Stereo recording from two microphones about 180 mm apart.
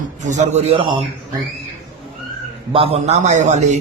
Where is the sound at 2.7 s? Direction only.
30° right (ahead or behind).